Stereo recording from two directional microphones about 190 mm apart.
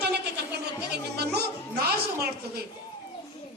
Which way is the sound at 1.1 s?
60° right (ahead or behind).